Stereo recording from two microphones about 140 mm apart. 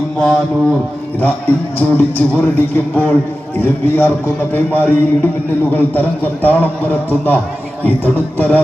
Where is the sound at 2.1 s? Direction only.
15° left (ahead or behind).